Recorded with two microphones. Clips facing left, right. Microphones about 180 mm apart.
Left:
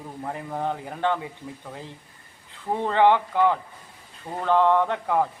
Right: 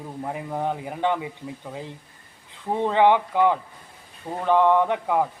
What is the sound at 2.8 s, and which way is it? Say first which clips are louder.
A man's voice: right 1 dB; 15° right (ahead or behind).